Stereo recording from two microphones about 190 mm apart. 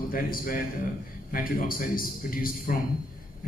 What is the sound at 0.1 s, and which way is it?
A man's voice, 50° left (ahead or behind).